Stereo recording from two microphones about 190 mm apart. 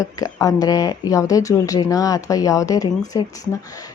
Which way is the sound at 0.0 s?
15° left (ahead or behind).